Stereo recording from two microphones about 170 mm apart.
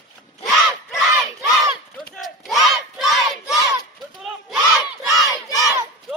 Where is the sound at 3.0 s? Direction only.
Centre (ahead or behind).